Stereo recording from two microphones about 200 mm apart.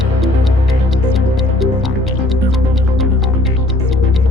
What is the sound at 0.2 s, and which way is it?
Music, centre (ahead or behind).